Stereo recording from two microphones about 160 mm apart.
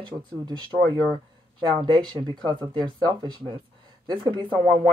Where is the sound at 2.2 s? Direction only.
30° right (ahead or behind).